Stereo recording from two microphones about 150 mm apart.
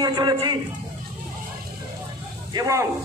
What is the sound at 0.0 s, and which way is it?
Speech, 30° right (ahead or behind).